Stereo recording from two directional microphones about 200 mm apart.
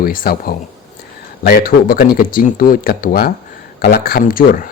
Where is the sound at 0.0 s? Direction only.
45° left (ahead or behind).